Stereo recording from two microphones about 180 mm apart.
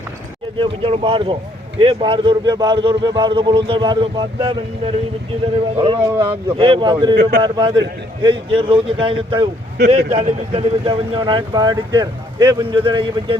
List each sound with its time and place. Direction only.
0.6 s speech: 30° right (ahead or behind)
6.0 s speech: 15° right (ahead or behind)
6.6 s speech: 30° right (ahead or behind)
7.2 s a man's voice: 60° right (ahead or behind)
7.4 s speech: 25° right (ahead or behind)